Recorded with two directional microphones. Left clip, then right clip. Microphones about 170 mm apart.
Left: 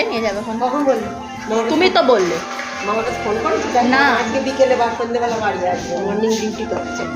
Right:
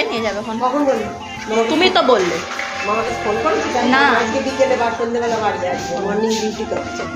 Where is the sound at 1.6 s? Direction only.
10° left (ahead or behind).